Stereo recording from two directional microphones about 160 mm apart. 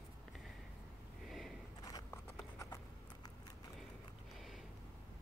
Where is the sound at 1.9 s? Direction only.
20° left (ahead or behind).